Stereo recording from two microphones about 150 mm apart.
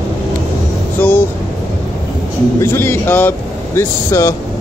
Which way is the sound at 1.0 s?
10° left (ahead or behind).